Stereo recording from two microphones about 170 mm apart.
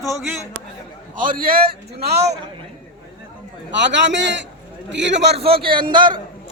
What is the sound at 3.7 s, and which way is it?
A man's voice, 90° right.